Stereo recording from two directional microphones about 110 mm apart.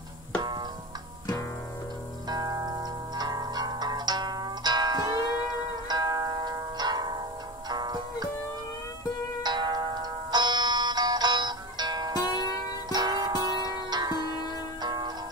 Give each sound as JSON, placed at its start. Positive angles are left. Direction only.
{"t": 0.4, "sound": "music", "side_deg": -40}
{"t": 2.2, "sound": "music", "side_deg": -35}
{"t": 9.4, "sound": "music", "side_deg": -40}